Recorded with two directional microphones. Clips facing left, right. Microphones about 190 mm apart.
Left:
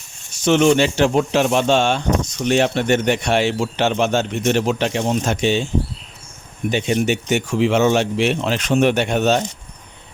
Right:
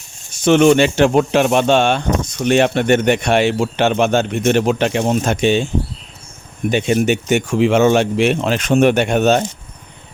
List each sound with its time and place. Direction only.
0.3 s speech: 55° right (ahead or behind)
6.7 s speech: 55° right (ahead or behind)